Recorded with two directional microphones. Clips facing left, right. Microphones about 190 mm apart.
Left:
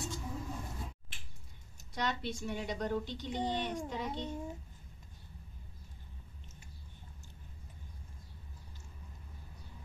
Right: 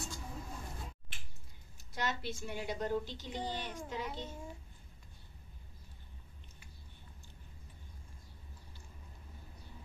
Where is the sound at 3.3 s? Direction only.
20° left (ahead or behind).